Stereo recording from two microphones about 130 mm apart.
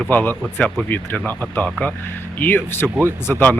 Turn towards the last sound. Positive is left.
turn(degrees=15)  # may be behind; listen again after turning